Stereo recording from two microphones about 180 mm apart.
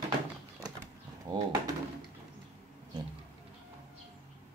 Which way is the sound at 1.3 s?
20° right (ahead or behind).